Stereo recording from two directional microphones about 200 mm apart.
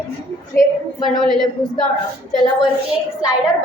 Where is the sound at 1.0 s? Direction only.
Centre (ahead or behind).